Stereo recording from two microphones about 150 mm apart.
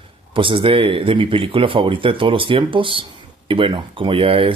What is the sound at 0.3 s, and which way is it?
Speech, 35° right (ahead or behind).